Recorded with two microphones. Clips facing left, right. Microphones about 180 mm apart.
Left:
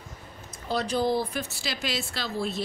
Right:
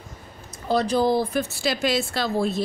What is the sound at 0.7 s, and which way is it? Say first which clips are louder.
A woman's voice: right 5 dB; 40° right (ahead or behind).